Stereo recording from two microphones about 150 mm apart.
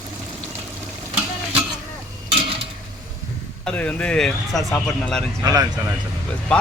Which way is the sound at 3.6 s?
10° left (ahead or behind).